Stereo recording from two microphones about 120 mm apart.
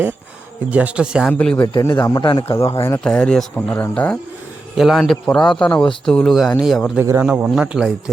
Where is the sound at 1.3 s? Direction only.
10° left (ahead or behind).